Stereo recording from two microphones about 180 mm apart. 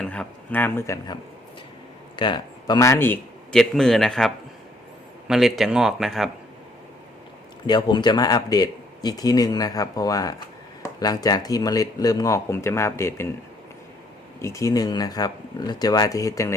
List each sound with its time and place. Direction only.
0.0 s speech: 5° left (ahead or behind)
5.3 s speech: centre (ahead or behind)
7.7 s speech: 25° left (ahead or behind)
14.4 s speech: 15° left (ahead or behind)